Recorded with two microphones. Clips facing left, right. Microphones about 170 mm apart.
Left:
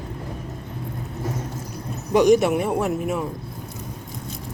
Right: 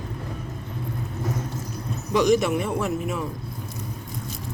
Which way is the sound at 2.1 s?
55° left (ahead or behind).